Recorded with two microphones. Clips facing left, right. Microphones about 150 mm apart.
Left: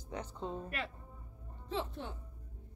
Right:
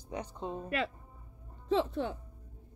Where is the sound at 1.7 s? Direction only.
90° right.